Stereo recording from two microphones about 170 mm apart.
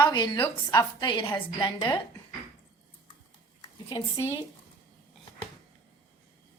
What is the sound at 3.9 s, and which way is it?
Speech, 20° left (ahead or behind).